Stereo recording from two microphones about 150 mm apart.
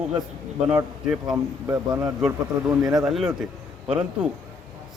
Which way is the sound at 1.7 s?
25° right (ahead or behind).